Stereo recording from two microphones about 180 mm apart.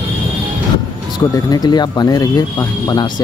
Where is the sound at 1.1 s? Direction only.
20° left (ahead or behind).